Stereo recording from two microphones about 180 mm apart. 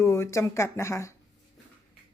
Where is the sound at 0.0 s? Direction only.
15° left (ahead or behind).